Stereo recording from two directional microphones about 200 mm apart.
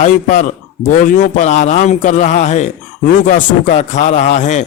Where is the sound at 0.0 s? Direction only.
35° left (ahead or behind).